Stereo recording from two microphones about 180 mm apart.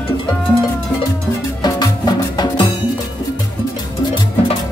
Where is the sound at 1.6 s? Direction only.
20° left (ahead or behind).